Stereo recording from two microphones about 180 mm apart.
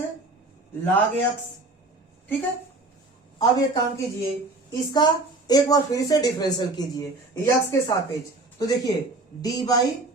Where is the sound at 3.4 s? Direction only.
20° left (ahead or behind).